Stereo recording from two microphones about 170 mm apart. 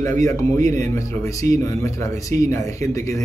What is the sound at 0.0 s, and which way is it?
A man's voice, 15° left (ahead or behind).